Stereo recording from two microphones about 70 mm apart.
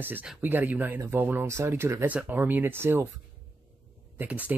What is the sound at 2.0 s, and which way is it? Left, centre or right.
Speech, right.